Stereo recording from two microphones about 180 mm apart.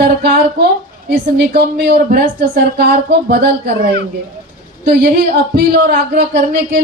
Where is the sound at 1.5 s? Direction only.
65° right (ahead or behind).